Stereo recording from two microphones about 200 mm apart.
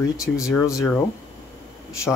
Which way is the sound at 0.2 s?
15° left (ahead or behind).